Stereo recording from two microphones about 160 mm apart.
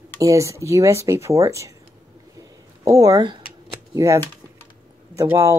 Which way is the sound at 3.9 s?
20° right (ahead or behind).